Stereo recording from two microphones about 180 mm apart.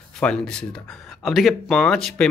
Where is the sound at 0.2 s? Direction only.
5° left (ahead or behind).